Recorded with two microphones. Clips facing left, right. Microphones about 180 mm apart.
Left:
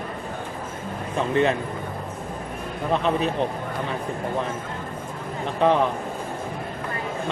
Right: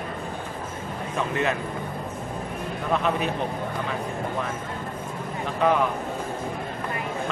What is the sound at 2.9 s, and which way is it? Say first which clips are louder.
Speech: left 2 dB; 30° left (ahead or behind).